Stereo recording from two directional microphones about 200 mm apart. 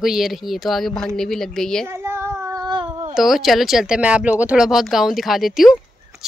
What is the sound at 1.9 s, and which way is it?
Child singing, 10° right (ahead or behind).